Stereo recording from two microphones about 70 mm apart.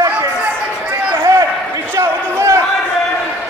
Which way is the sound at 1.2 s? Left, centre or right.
Right.